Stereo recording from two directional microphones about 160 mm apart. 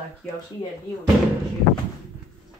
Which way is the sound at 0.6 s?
30° left (ahead or behind).